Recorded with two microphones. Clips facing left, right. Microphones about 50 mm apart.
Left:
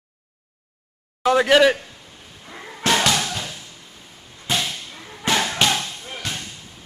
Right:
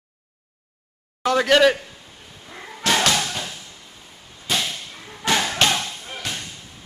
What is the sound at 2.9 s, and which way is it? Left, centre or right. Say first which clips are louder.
Thump: even; centre.